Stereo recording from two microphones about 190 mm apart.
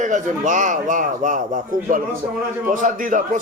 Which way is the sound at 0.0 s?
40° right (ahead or behind).